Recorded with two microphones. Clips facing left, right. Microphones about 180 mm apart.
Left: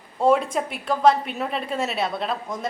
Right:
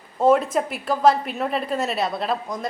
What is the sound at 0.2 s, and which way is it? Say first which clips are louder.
A woman's voice: right 2 dB; centre (ahead or behind).